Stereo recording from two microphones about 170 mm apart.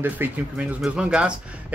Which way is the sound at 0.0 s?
10° right (ahead or behind).